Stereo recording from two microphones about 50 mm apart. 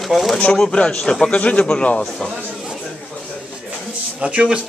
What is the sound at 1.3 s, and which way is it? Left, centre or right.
Speech, left.